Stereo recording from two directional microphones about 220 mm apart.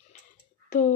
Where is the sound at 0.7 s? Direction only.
35° left (ahead or behind).